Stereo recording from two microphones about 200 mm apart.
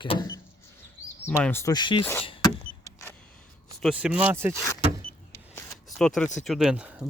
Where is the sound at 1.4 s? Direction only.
10° left (ahead or behind).